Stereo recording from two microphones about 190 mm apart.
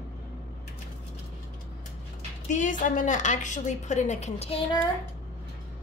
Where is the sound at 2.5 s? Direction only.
40° left (ahead or behind).